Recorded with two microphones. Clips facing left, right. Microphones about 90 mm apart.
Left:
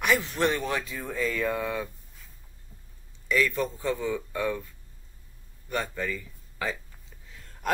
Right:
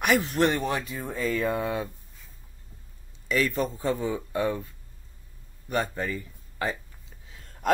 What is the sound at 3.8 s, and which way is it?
Speech, 40° right (ahead or behind).